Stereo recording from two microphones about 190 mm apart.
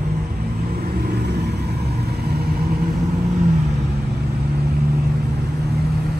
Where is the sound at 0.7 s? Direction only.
55° right (ahead or behind).